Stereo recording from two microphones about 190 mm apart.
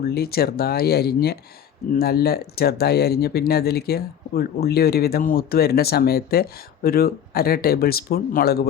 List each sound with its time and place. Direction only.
0.1 s speech: 55° left (ahead or behind)